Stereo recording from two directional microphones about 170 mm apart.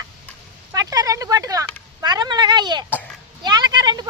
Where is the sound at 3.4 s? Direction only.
25° right (ahead or behind).